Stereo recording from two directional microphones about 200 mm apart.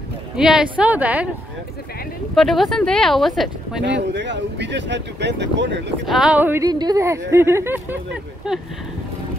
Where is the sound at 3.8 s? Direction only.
60° right (ahead or behind).